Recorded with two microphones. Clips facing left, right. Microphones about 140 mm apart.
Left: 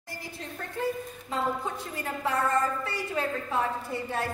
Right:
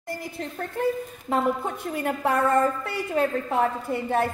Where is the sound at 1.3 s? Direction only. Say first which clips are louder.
Right 6 dB; 60° right (ahead or behind).